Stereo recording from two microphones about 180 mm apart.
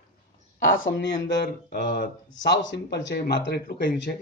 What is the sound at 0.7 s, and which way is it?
Speech, 90° left.